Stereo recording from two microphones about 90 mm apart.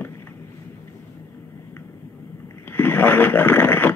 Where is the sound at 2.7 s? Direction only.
20° left (ahead or behind).